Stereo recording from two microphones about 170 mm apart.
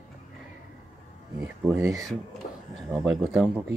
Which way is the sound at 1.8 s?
20° right (ahead or behind).